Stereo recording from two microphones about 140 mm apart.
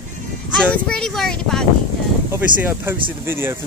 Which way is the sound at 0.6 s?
5° left (ahead or behind).